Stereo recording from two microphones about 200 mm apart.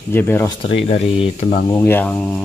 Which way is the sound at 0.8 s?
30° left (ahead or behind).